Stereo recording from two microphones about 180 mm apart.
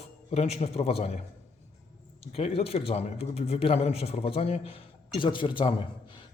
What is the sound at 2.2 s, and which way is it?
A man's voice, 35° left (ahead or behind).